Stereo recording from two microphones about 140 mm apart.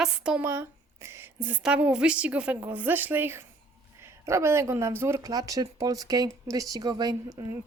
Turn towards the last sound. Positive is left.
turn(degrees=-30)  # may be behind; listen again after turning